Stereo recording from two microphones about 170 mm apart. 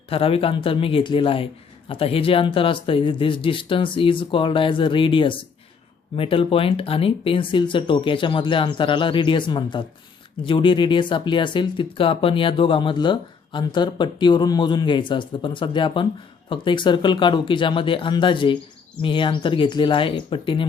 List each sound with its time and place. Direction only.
0.1 s speech: 35° left (ahead or behind)